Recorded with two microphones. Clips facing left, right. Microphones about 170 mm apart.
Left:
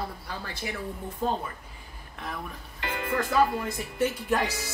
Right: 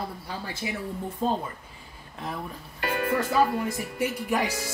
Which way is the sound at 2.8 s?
50° right (ahead or behind).